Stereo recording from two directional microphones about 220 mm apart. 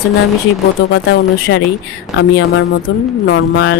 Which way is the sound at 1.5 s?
60° left (ahead or behind).